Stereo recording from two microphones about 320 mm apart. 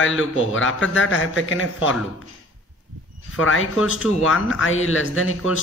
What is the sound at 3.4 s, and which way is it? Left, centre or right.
A man's voice, left.